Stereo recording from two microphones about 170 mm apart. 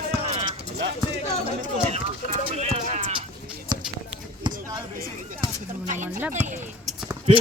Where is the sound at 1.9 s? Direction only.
40° right (ahead or behind).